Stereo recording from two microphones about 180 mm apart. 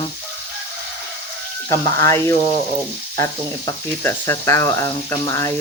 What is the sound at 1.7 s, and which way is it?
Speech, 15° left (ahead or behind).